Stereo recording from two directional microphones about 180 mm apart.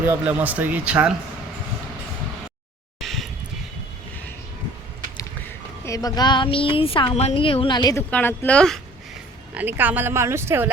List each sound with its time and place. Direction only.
0.0 s speech: 10° right (ahead or behind)
3.0 s vehicle: centre (ahead or behind)
5.8 s a woman's voice: 20° left (ahead or behind)
8.1 s speech: 10° left (ahead or behind)
9.6 s speech: 10° right (ahead or behind)